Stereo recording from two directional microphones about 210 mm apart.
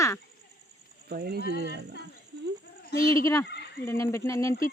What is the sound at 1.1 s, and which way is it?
Speech, 50° right (ahead or behind).